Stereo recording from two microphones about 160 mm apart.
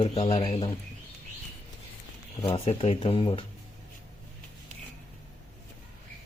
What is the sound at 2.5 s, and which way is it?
Speech, 40° left (ahead or behind).